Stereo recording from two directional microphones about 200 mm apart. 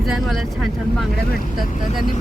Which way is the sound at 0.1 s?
Centre (ahead or behind).